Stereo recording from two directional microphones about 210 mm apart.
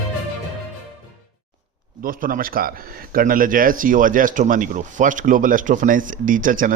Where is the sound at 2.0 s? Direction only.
40° right (ahead or behind).